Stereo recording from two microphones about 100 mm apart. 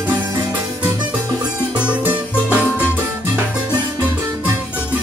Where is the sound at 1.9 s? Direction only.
15° right (ahead or behind).